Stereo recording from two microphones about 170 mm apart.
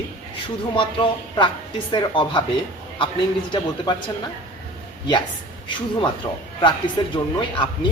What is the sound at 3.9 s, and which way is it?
Speech, 25° left (ahead or behind).